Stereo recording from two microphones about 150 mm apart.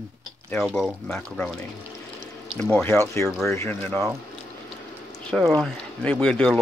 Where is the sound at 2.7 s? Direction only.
15° left (ahead or behind).